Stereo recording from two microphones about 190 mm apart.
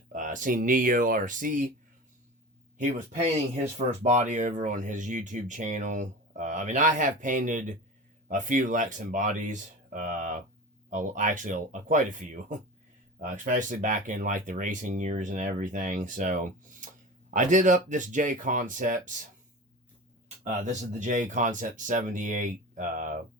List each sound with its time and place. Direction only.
0.1 s speech: 45° right (ahead or behind)
4.0 s speech: 40° right (ahead or behind)
20.2 s speech: 40° right (ahead or behind)